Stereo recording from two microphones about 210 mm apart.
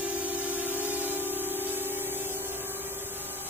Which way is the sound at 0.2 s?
10° right (ahead or behind).